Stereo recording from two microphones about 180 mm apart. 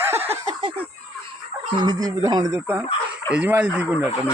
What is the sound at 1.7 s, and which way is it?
Speech, 20° right (ahead or behind).